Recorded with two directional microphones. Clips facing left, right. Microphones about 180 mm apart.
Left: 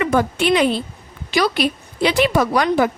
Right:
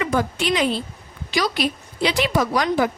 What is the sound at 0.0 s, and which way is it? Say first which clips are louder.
A woman's voice: left 4 dB; 60° left (ahead or behind).